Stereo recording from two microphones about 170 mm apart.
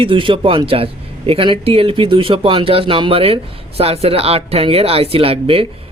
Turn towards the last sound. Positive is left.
turn(degrees=-35)  # may be behind; listen again after turning